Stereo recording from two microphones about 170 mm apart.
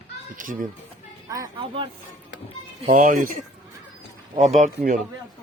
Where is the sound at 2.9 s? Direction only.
50° right (ahead or behind).